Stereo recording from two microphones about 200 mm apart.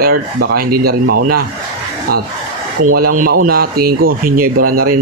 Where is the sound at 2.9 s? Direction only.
45° right (ahead or behind).